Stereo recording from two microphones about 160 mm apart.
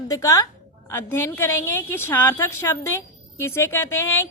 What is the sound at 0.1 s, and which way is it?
A woman's voice, 20° left (ahead or behind).